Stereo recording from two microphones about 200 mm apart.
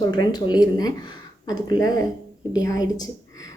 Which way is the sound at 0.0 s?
20° left (ahead or behind).